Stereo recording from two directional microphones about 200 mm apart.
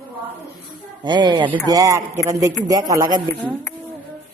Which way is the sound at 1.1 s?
20° right (ahead or behind).